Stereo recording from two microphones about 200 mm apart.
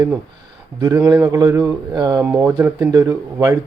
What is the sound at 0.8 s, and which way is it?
A man's voice, 20° right (ahead or behind).